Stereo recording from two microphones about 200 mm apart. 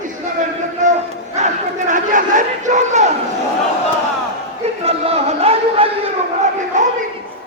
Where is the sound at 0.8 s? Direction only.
40° right (ahead or behind).